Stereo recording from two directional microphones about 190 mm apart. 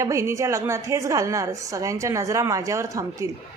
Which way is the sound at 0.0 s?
15° right (ahead or behind).